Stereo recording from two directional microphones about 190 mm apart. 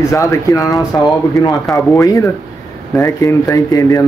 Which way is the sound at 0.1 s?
15° left (ahead or behind).